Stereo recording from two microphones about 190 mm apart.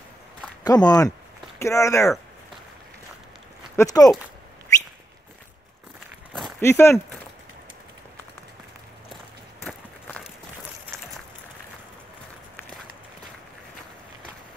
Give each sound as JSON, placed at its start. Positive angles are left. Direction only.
{"t": 0.7, "sound": "speech", "side_deg": 20}
{"t": 3.7, "sound": "speech", "side_deg": 15}
{"t": 6.6, "sound": "speech", "side_deg": 15}
{"t": 9.7, "sound": "a sound", "side_deg": 5}